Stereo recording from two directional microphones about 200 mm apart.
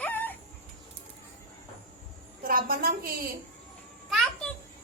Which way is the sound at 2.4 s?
45° right (ahead or behind).